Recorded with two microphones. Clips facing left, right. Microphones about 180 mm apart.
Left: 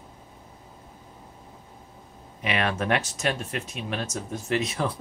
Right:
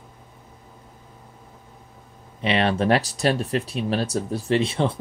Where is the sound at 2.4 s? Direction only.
30° right (ahead or behind).